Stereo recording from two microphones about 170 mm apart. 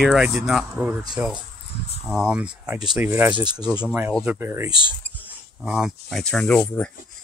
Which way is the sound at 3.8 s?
10° right (ahead or behind).